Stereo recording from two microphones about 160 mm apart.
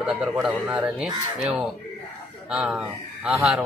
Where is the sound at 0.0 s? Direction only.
5° right (ahead or behind).